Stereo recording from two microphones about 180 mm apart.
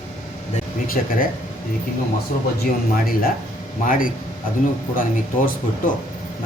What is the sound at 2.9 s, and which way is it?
Speech, 55° left (ahead or behind).